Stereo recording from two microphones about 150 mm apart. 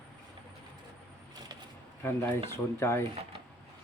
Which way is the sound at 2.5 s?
20° left (ahead or behind).